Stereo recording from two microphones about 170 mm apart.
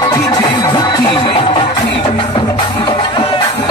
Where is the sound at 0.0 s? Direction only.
20° left (ahead or behind).